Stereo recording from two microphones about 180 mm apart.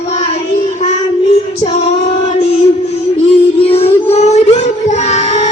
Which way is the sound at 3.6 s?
35° left (ahead or behind).